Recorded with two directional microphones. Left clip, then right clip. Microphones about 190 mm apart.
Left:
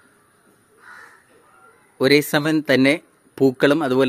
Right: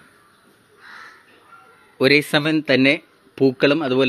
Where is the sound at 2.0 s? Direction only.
10° left (ahead or behind).